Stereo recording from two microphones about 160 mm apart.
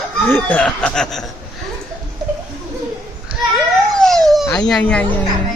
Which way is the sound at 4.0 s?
Centre (ahead or behind).